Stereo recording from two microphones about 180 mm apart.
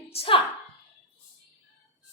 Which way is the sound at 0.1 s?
30° left (ahead or behind).